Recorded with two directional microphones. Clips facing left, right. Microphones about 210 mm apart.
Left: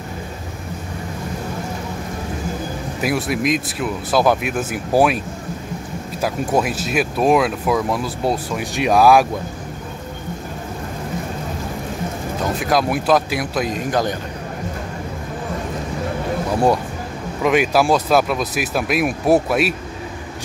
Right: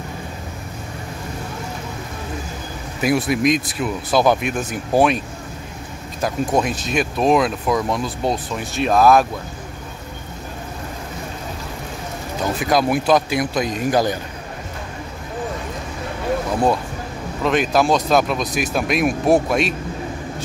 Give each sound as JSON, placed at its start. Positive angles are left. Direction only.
{"t": 3.0, "sound": "speech", "side_deg": 0}
{"t": 6.2, "sound": "speech", "side_deg": 5}
{"t": 12.5, "sound": "speech", "side_deg": 0}
{"t": 17.4, "sound": "speech", "side_deg": 10}